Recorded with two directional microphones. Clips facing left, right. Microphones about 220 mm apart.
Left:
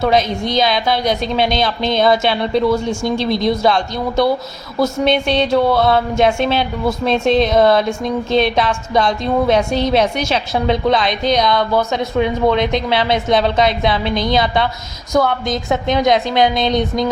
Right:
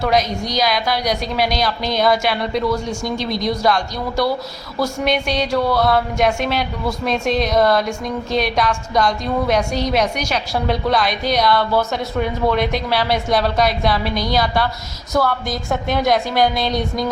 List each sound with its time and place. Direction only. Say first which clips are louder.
0.0 s a woman's voice: left 3 dB; 25° left (ahead or behind)